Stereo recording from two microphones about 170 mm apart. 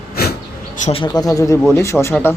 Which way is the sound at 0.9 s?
30° left (ahead or behind).